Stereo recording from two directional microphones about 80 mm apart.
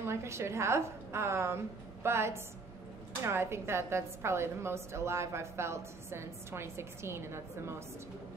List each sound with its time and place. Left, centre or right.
0.0 s a woman's voice: right